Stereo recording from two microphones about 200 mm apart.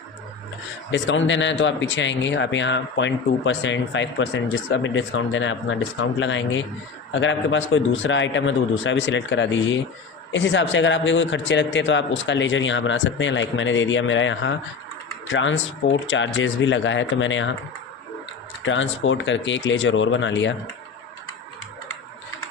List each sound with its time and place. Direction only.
0.9 s a man's voice: 65° left (ahead or behind)
18.6 s a man's voice: 70° left (ahead or behind)